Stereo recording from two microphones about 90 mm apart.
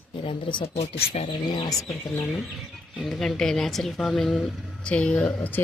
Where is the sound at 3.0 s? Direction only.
5° left (ahead or behind).